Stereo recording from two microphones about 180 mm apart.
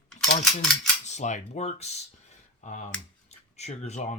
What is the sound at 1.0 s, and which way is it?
Speech, 40° left (ahead or behind).